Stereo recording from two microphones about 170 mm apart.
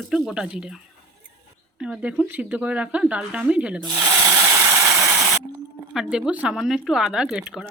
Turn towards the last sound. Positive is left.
turn(degrees=-5)  # may be behind; listen again after turning